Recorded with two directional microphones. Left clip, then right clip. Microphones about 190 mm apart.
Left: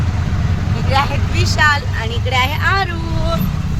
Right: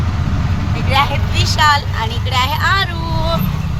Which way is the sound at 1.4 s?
45° left (ahead or behind).